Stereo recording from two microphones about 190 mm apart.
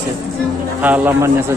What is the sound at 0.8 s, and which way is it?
Speech, 10° right (ahead or behind).